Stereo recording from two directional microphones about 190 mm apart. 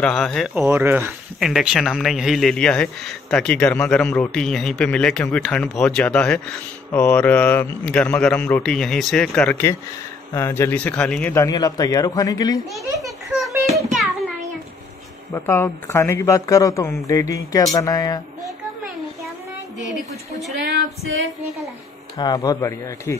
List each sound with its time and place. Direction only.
0.0 s a man's voice: 5° left (ahead or behind)
0.7 s a man's voice: 10° right (ahead or behind); by 12.5 s 20° left (ahead or behind)
15.3 s a man's voice: 15° left (ahead or behind)
19.9 s a man's voice: centre (ahead or behind)
20.6 s female singing: 55° right (ahead or behind)
22.1 s speech: 20° left (ahead or behind)